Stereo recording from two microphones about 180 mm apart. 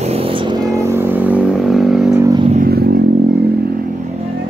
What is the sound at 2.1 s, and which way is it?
Vehicle, 20° right (ahead or behind).